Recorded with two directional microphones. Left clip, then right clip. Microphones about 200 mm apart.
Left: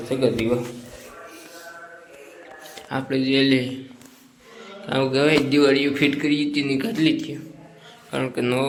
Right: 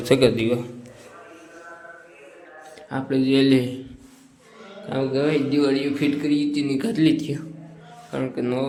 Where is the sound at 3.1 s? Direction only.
25° right (ahead or behind).